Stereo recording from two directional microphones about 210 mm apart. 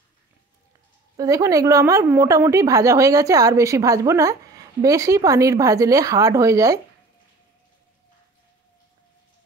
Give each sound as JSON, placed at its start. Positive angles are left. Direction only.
{"t": 1.1, "sound": "a woman's voice", "side_deg": -15}